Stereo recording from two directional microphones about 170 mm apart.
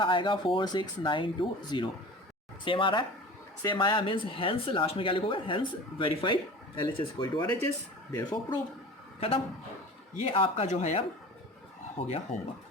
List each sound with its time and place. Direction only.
0.0 s speech: 30° left (ahead or behind)
10.2 s speech: 35° left (ahead or behind)
12.0 s speech: 40° left (ahead or behind)